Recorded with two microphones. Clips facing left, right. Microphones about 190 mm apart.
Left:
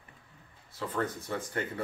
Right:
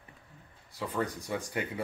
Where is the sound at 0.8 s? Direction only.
10° right (ahead or behind).